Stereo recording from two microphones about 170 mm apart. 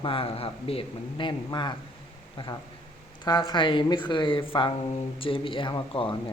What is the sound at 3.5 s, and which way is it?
Speech, 30° left (ahead or behind).